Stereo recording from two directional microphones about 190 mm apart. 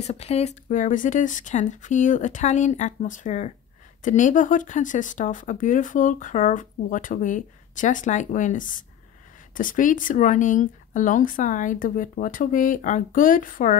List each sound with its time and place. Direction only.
0.0 s speech: 35° left (ahead or behind)